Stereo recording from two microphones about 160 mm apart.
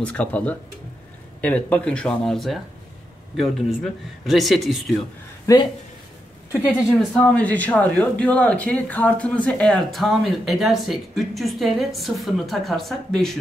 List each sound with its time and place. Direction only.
0.0 s speech: 10° left (ahead or behind)
5.5 s speech: 20° left (ahead or behind)
7.0 s speech: 5° left (ahead or behind)